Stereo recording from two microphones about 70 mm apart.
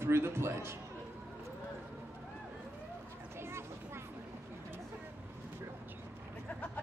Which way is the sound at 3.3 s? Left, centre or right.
Right.